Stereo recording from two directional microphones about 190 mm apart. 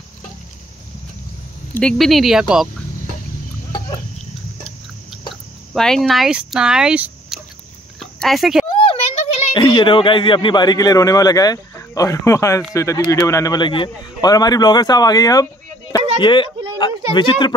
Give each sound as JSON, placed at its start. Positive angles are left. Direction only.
{"t": 1.7, "sound": "speech", "side_deg": 5}
{"t": 5.3, "sound": "speech", "side_deg": 0}
{"t": 8.0, "sound": "a sound", "side_deg": 0}
{"t": 8.7, "sound": "speech", "side_deg": 30}